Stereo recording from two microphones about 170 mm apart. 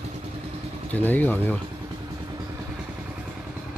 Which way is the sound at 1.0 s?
10° left (ahead or behind).